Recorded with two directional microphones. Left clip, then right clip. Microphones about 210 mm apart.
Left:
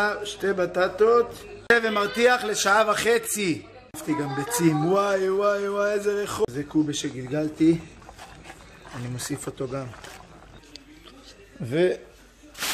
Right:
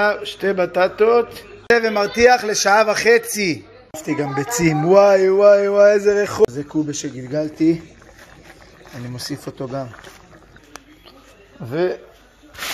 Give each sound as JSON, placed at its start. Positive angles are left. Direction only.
{"t": 0.0, "sound": "a man's voice", "side_deg": -20}
{"t": 9.3, "sound": "a man's voice", "side_deg": -10}
{"t": 11.6, "sound": "speech", "side_deg": 10}